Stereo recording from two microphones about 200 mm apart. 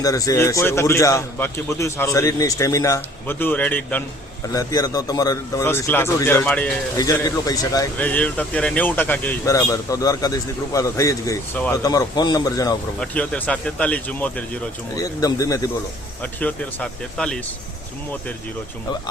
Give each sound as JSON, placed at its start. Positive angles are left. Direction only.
{"t": 0.0, "sound": "speech", "side_deg": 15}
{"t": 7.9, "sound": "speech", "side_deg": 5}
{"t": 13.0, "sound": "speech", "side_deg": 5}
{"t": 14.9, "sound": "speech", "side_deg": 15}